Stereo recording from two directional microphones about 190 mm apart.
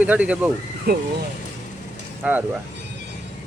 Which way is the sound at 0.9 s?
55° right (ahead or behind).